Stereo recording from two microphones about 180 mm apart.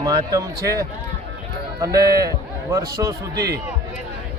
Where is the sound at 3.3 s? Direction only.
65° right (ahead or behind).